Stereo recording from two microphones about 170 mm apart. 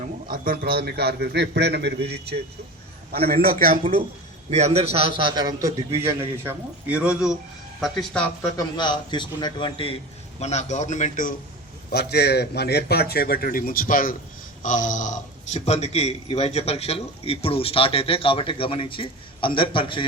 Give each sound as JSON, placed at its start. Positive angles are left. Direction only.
{"t": 0.0, "sound": "a man's voice", "side_deg": -55}
{"t": 3.1, "sound": "a man's voice", "side_deg": -65}
{"t": 4.4, "sound": "a man's voice", "side_deg": -40}
{"t": 8.5, "sound": "a man's voice", "side_deg": 25}
{"t": 11.9, "sound": "a man's voice", "side_deg": 70}